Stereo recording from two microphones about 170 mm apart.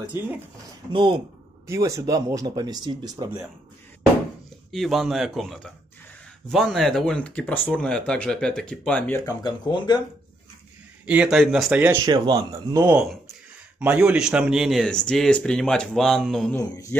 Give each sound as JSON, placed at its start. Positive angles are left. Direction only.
{"t": 0.0, "sound": "speech", "side_deg": -10}
{"t": 0.9, "sound": "speech", "side_deg": -30}
{"t": 1.7, "sound": "speech", "side_deg": -20}
{"t": 4.6, "sound": "speech", "side_deg": 0}
{"t": 11.1, "sound": "speech", "side_deg": -5}
{"t": 12.1, "sound": "speech", "side_deg": -25}
{"t": 12.8, "sound": "speech", "side_deg": -5}